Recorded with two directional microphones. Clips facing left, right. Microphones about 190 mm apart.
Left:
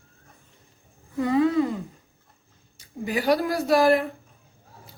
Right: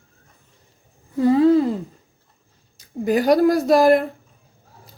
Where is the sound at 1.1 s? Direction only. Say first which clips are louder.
Right 6 dB; 30° right (ahead or behind).